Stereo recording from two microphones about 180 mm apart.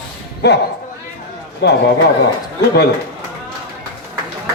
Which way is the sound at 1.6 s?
70° left (ahead or behind).